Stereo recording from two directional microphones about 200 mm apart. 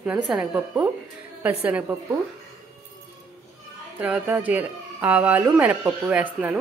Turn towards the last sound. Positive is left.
turn(degrees=-5)  # may be behind; listen again after turning